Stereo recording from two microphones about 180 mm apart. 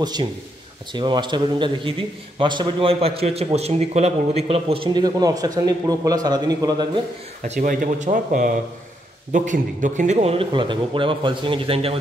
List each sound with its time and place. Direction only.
0.0 s a man's voice: 25° right (ahead or behind)
7.4 s a man's voice: 45° right (ahead or behind)